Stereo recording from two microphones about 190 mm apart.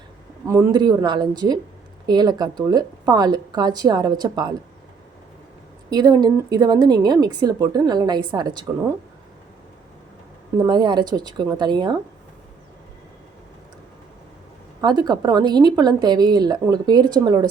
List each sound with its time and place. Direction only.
0.4 s a woman's voice: 20° right (ahead or behind)
5.9 s a woman's voice: 20° right (ahead or behind)
10.6 s a woman's voice: 25° right (ahead or behind)
14.8 s a woman's voice: 20° right (ahead or behind)